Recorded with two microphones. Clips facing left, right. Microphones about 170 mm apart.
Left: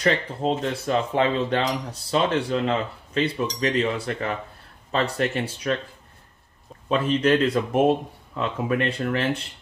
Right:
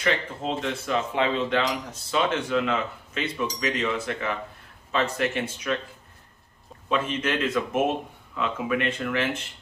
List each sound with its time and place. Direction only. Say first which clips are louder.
0.0 s speech: left 4 dB; 40° left (ahead or behind)
6.9 s speech: left 6 dB; 35° left (ahead or behind)